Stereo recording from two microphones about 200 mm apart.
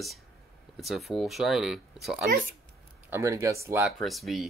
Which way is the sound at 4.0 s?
Centre (ahead or behind).